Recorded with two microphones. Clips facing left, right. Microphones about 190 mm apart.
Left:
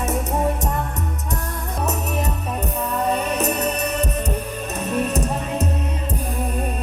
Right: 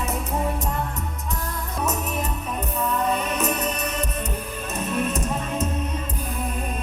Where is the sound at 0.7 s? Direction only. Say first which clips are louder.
Left 3 dB; 40° left (ahead or behind).